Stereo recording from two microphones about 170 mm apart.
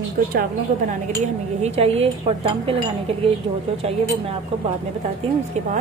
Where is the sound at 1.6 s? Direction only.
35° right (ahead or behind).